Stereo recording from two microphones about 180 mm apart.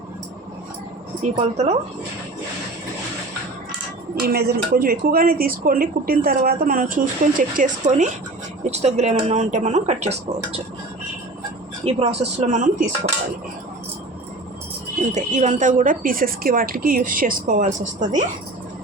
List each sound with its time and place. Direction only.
1.2 s speech: 40° right (ahead or behind)
4.1 s speech: 60° right (ahead or behind); by 10.6 s 35° right (ahead or behind)
11.8 s speech: 35° right (ahead or behind)
15.1 s speech: 40° right (ahead or behind)